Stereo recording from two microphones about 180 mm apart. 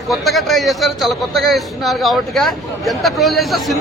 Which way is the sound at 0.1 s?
Centre (ahead or behind).